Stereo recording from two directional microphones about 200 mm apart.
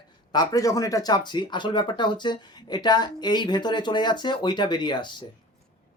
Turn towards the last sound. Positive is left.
turn(degrees=20)  # may be behind; listen again after turning